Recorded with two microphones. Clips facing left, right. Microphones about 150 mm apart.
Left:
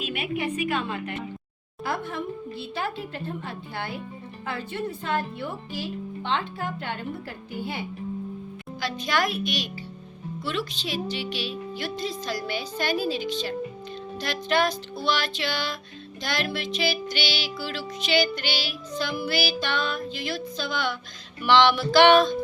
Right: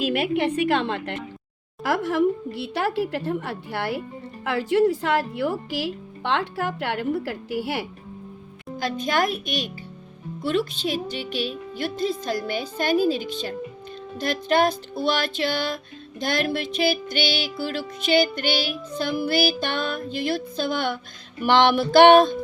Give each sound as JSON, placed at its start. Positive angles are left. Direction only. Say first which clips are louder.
{"t": 0.0, "sound": "a woman's voice", "louder": "right 7 dB", "side_deg": -85}
{"t": 4.4, "sound": "speech", "louder": "right 12 dB", "side_deg": -85}
{"t": 8.8, "sound": "music", "louder": "right 3 dB", "side_deg": -45}